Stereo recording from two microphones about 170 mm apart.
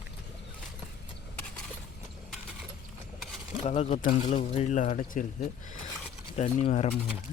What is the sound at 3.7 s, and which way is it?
Speech, 40° left (ahead or behind).